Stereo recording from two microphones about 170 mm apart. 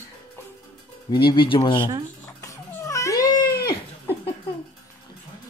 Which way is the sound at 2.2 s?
15° left (ahead or behind).